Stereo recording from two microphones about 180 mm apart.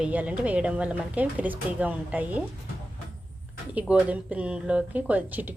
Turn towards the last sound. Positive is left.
turn(degrees=-10)  # may be behind; listen again after turning